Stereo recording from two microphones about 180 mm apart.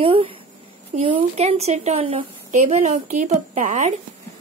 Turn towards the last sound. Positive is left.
turn(degrees=-40)  # may be behind; listen again after turning